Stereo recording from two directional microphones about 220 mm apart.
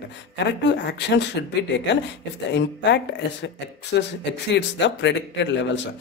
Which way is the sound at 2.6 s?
50° left (ahead or behind).